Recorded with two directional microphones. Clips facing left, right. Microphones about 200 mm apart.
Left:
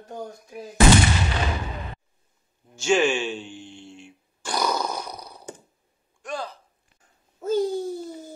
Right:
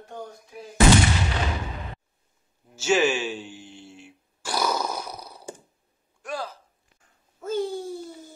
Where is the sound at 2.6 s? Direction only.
5° right (ahead or behind).